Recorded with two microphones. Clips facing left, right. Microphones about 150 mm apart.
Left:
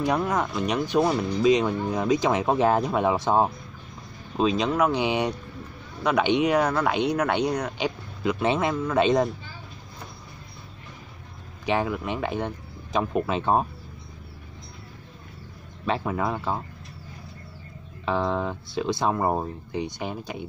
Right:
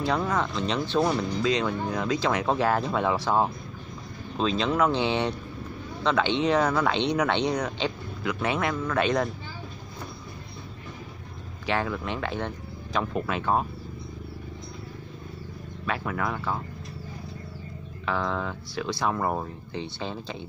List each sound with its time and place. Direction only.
0.0 s speech: 15° left (ahead or behind)
8.2 s speech: 20° left (ahead or behind)
11.6 s speech: 15° left (ahead or behind)
15.9 s speech: 25° left (ahead or behind)
18.0 s speech: 20° left (ahead or behind)